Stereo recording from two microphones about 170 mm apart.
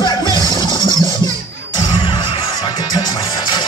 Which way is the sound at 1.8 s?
25° left (ahead or behind).